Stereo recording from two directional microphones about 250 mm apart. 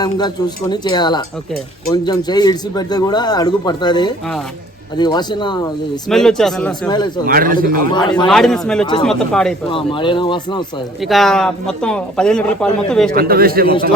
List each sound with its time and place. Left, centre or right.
0.7 s speech: centre
6.1 s speech: centre
6.8 s speech: centre
7.3 s a man's voice: right
7.9 s speech: centre
8.3 s speech: centre
9.7 s speech: centre
11.0 s speech: centre
13.1 s a man's voice: right